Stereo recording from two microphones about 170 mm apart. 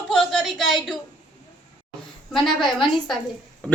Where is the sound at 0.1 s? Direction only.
5° left (ahead or behind).